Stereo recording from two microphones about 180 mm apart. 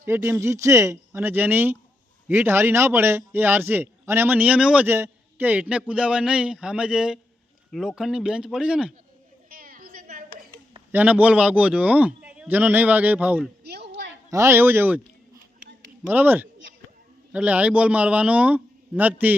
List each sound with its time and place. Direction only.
0.0 s a man's voice: 15° right (ahead or behind)
9.5 s a sound: 55° right (ahead or behind)
10.9 s a man's voice: 10° right (ahead or behind)
13.7 s a sound: 65° right (ahead or behind)
14.3 s a man's voice: 15° right (ahead or behind)
16.0 s a man's voice: 10° right (ahead or behind)